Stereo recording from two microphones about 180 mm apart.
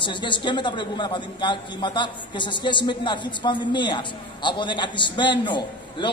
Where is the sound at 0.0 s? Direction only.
25° left (ahead or behind).